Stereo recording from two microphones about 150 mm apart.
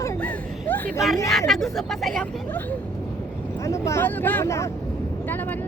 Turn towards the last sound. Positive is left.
turn(degrees=10)  # may be behind; listen again after turning